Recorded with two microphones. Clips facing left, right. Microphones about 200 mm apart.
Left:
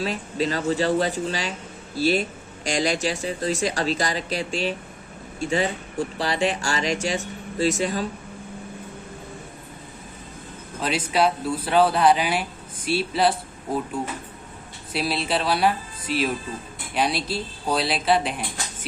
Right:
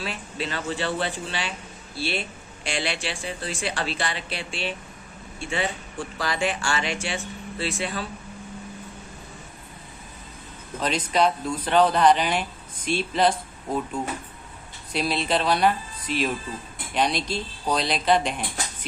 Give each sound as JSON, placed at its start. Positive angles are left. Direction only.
{"t": 0.0, "sound": "speech", "side_deg": 40}
{"t": 10.8, "sound": "a man's voice", "side_deg": 5}
{"t": 14.9, "sound": "speech", "side_deg": 5}